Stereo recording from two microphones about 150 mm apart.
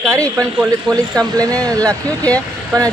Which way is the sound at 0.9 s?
25° right (ahead or behind).